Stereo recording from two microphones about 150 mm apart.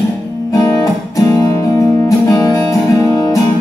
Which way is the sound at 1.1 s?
20° left (ahead or behind).